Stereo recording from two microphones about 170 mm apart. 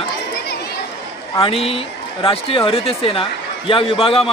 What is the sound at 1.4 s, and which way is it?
Speech, 35° left (ahead or behind).